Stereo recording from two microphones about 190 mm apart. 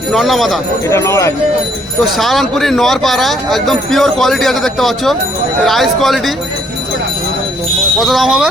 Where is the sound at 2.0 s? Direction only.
Centre (ahead or behind).